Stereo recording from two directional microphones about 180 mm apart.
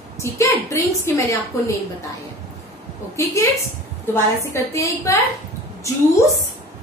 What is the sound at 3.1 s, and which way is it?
A woman's voice, 15° left (ahead or behind).